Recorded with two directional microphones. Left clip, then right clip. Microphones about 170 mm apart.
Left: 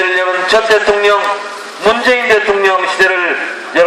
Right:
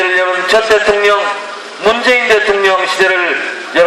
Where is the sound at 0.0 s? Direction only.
10° left (ahead or behind).